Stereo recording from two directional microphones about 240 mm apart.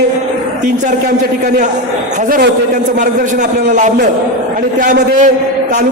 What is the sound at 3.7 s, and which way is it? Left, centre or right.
A man's voice, right.